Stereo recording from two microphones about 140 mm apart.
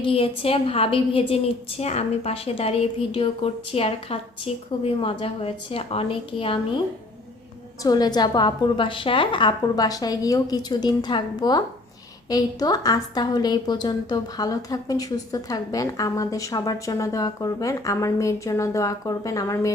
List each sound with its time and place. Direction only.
0.0 s a woman's voice: 40° left (ahead or behind)
7.8 s a woman's voice: 30° left (ahead or behind)